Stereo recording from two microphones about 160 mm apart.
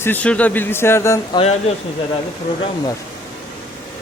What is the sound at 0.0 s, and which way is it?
Speech, 10° left (ahead or behind).